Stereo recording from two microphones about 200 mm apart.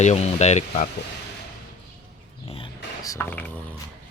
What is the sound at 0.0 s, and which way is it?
Speech, 35° left (ahead or behind).